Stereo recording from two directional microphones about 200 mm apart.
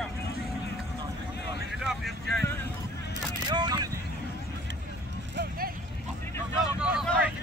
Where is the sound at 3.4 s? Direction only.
20° right (ahead or behind).